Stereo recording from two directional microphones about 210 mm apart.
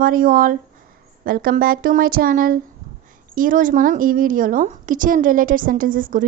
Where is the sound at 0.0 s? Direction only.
40° right (ahead or behind).